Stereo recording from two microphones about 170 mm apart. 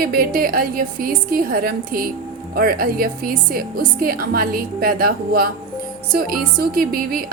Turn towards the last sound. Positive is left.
turn(degrees=-60)  # may be behind; listen again after turning